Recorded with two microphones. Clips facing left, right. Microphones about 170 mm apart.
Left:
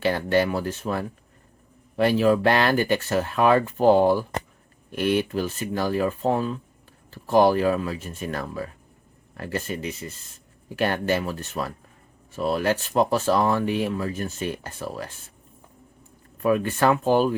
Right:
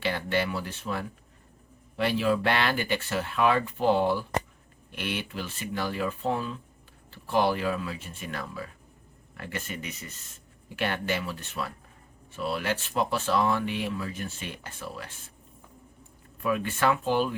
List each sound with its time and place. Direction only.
0.0 s speech: 45° left (ahead or behind)
10.8 s speech: 40° left (ahead or behind)
16.4 s speech: 40° left (ahead or behind)